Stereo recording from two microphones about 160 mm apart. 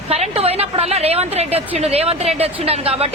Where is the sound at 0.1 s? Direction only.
40° right (ahead or behind).